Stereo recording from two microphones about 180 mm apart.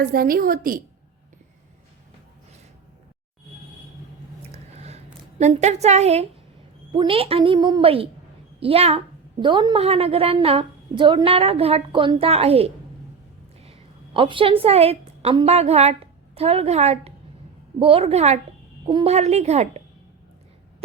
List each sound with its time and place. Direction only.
0.0 s a woman's voice: 55° right (ahead or behind)
4.7 s a sound: 35° right (ahead or behind)
5.4 s a woman's voice: 40° right (ahead or behind)